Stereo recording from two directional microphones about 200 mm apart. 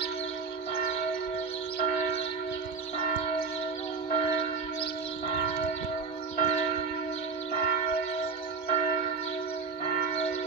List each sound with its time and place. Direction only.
4.1 s church bell: 30° left (ahead or behind)
6.3 s church bell: 40° left (ahead or behind)